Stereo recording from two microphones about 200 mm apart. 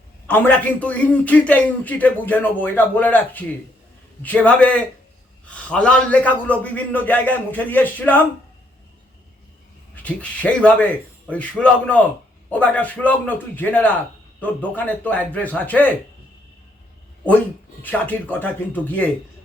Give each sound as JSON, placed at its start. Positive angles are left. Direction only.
{"t": 0.3, "sound": "a man's voice", "side_deg": 10}
{"t": 9.9, "sound": "a man's voice", "side_deg": 10}
{"t": 17.8, "sound": "a man's voice", "side_deg": 10}